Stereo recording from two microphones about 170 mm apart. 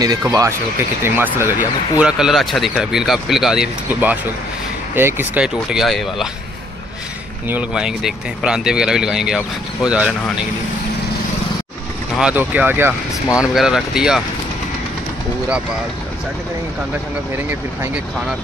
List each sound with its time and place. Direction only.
0.3 s speech: 20° right (ahead or behind); by 6.2 s centre (ahead or behind)
7.4 s speech: 5° right (ahead or behind)
12.2 s speech: 5° right (ahead or behind)